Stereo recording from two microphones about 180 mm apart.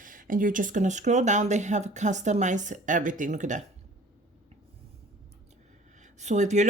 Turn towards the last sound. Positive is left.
turn(degrees=-40)  # may be behind; listen again after turning